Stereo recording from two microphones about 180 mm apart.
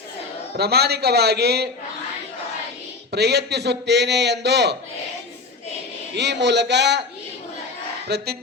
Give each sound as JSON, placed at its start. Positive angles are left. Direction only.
{"t": 0.5, "sound": "speech", "side_deg": -65}
{"t": 3.1, "sound": "a man's voice", "side_deg": -65}
{"t": 6.1, "sound": "a man's voice", "side_deg": -70}
{"t": 8.0, "sound": "speech", "side_deg": -65}